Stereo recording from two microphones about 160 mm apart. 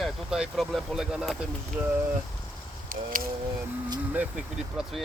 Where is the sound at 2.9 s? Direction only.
60° right (ahead or behind).